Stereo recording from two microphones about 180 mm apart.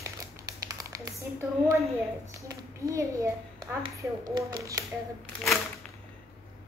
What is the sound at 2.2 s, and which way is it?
A child's voice, 20° right (ahead or behind).